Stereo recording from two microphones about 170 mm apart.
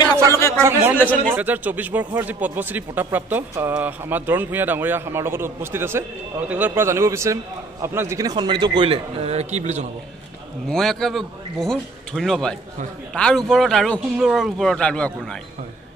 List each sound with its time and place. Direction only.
0.3 s a sound: 15° left (ahead or behind)
0.6 s a man's voice: 15° right (ahead or behind); by 9.8 s 40° right (ahead or behind)
10.7 s speech: centre (ahead or behind)